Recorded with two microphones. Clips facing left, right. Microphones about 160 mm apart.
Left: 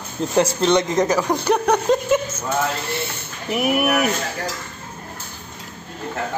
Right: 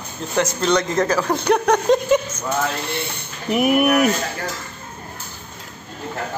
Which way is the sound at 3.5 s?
Centre (ahead or behind).